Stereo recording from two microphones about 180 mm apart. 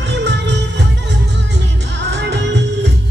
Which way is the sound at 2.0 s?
75° right (ahead or behind).